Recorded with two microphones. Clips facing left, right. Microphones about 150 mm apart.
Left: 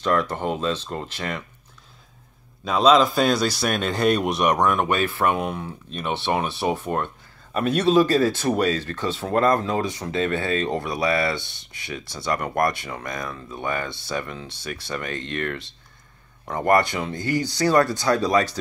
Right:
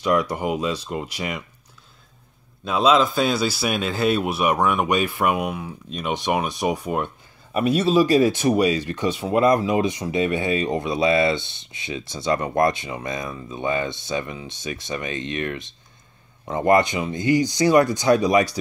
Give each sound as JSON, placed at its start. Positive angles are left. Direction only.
{"t": 0.0, "sound": "a man's voice", "side_deg": -10}
{"t": 2.6, "sound": "a man's voice", "side_deg": -5}